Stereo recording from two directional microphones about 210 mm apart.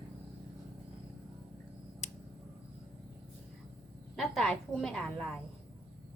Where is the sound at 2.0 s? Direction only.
30° left (ahead or behind).